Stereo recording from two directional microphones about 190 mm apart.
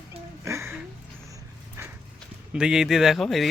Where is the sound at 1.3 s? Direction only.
10° right (ahead or behind).